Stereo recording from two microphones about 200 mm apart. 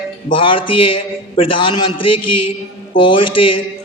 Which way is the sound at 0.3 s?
25° left (ahead or behind).